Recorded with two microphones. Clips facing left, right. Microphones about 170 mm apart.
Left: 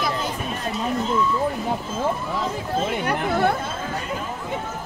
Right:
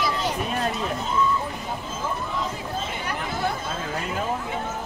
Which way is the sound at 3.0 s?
60° left (ahead or behind).